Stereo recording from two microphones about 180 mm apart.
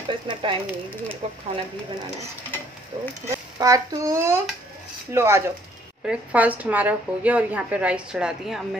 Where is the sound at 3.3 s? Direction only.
20° right (ahead or behind).